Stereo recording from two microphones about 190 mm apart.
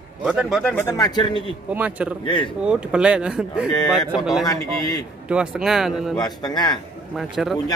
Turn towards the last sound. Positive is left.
turn(degrees=0)  # may be behind; listen again after turning